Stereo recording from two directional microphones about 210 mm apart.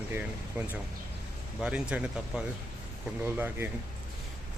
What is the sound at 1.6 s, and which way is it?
Speech, 5° right (ahead or behind).